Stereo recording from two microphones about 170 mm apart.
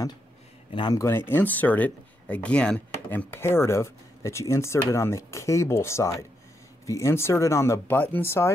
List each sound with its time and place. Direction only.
0.7 s speech: 25° left (ahead or behind)
1.3 s speech: 10° left (ahead or behind)